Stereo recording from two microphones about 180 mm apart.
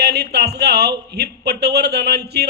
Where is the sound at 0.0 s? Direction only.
65° right (ahead or behind).